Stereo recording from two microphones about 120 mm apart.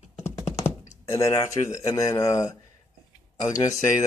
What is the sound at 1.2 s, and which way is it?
Speech, 25° left (ahead or behind).